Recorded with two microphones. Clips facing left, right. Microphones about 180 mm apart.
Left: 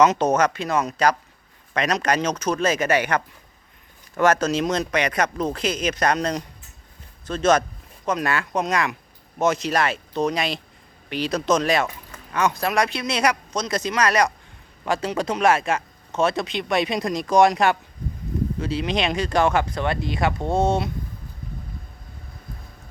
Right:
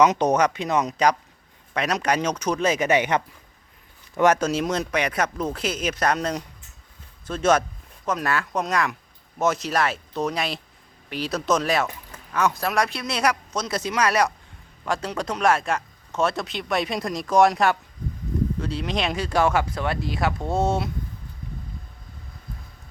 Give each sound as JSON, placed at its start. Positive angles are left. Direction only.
{"t": 0.0, "sound": "speech", "side_deg": -15}
{"t": 4.2, "sound": "speech", "side_deg": -15}